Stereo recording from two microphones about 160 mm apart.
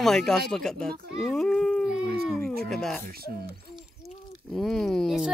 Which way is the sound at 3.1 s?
70° right (ahead or behind).